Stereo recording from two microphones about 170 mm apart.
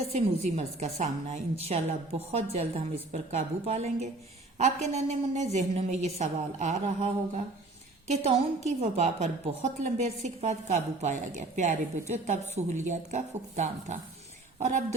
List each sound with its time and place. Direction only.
0.1 s a woman's voice: 40° right (ahead or behind)